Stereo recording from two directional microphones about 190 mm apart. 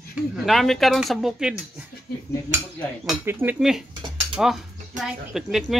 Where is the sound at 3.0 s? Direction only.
5° right (ahead or behind).